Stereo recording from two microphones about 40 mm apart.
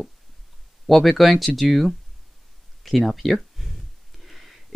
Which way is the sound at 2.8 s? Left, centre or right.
Centre.